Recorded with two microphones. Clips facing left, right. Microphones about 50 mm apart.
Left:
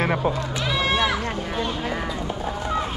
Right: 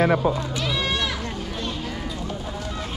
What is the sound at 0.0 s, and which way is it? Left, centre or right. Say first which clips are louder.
Run: right 2 dB; centre.